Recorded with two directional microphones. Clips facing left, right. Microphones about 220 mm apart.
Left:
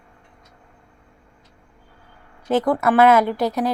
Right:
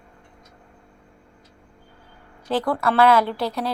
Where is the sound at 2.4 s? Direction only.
20° left (ahead or behind).